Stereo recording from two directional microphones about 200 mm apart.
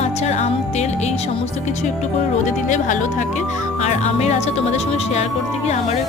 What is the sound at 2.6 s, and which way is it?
Speech, 40° left (ahead or behind).